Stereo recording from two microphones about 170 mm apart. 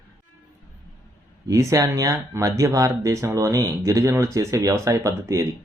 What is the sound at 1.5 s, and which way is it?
Speech, 20° right (ahead or behind).